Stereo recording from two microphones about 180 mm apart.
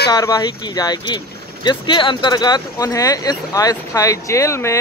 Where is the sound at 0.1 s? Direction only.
20° left (ahead or behind).